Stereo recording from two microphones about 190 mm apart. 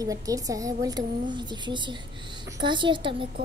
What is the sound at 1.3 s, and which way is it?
A woman's voice, 25° right (ahead or behind).